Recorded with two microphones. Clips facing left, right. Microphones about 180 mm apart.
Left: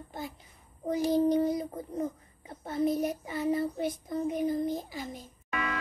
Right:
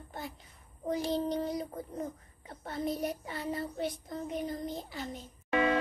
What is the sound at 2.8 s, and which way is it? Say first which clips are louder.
Child singing: left 6 dB; 50° left (ahead or behind).